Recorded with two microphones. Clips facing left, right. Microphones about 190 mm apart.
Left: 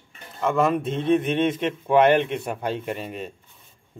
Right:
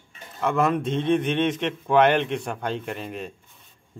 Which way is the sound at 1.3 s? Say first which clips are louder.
Left 1 dB; 45° left (ahead or behind).